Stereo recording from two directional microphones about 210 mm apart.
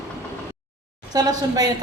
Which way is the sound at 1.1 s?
20° right (ahead or behind).